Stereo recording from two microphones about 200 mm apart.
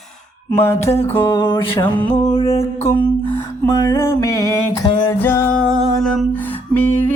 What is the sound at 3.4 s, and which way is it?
Music, 15° left (ahead or behind).